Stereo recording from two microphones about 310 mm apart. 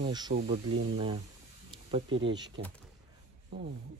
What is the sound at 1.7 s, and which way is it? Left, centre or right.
Snake, centre.